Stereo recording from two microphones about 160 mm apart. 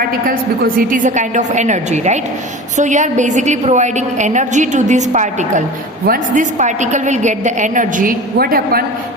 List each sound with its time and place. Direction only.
0.8 s a woman's voice: 55° right (ahead or behind)